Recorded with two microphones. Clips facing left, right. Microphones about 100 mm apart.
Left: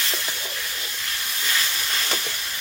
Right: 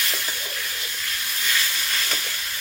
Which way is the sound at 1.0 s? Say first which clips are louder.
Even; 30° left (ahead or behind).